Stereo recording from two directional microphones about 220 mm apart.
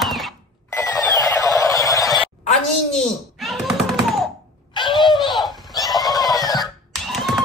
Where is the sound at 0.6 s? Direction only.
15° left (ahead or behind).